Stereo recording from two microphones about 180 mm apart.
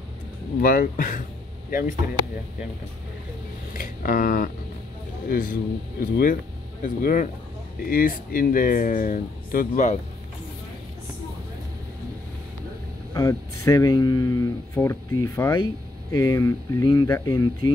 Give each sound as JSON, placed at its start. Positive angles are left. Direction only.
{"t": 0.6, "sound": "speech", "side_deg": 50}
{"t": 3.7, "sound": "speech", "side_deg": 50}
{"t": 13.1, "sound": "speech", "side_deg": 15}